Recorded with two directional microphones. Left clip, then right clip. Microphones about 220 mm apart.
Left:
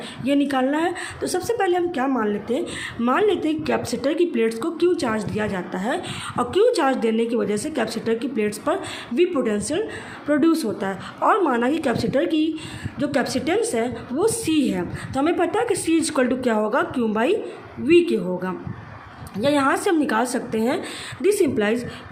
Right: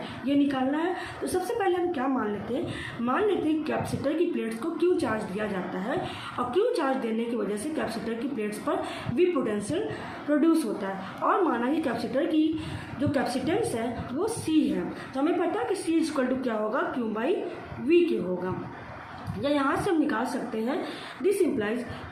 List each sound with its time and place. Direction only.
0.3 s a woman's voice: 50° left (ahead or behind)